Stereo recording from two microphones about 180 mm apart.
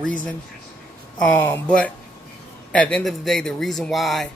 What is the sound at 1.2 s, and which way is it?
Speech, 10° left (ahead or behind).